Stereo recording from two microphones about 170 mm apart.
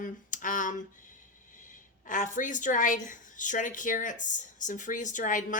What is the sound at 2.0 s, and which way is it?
Speech, 50° left (ahead or behind).